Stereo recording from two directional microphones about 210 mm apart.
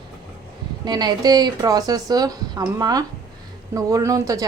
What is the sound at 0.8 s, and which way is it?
Speech, 20° right (ahead or behind).